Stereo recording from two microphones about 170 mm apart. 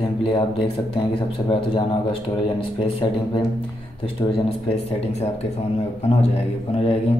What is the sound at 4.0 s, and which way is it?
Speech, 35° left (ahead or behind).